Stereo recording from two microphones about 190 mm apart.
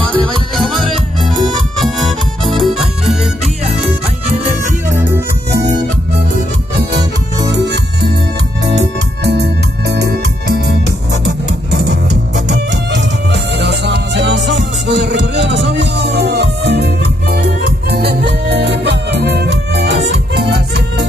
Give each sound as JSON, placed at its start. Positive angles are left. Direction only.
{"t": 0.0, "sound": "music", "side_deg": 5}
{"t": 4.9, "sound": "music", "side_deg": -10}
{"t": 7.5, "sound": "music", "side_deg": -65}
{"t": 9.2, "sound": "music", "side_deg": -60}